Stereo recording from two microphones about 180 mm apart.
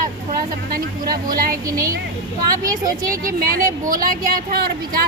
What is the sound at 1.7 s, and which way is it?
Speech, 15° right (ahead or behind).